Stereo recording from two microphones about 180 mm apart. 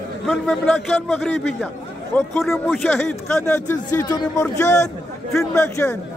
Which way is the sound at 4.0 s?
20° left (ahead or behind).